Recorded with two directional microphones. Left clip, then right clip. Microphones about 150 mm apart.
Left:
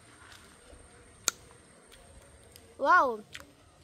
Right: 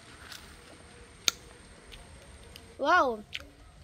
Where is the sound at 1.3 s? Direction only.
25° left (ahead or behind).